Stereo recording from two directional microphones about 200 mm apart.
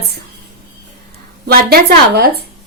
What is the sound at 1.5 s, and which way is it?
Speech, 50° right (ahead or behind).